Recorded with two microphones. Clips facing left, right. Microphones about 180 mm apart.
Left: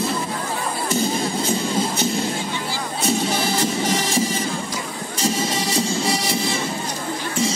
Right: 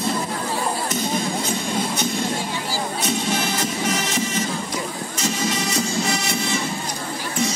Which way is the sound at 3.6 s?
30° left (ahead or behind).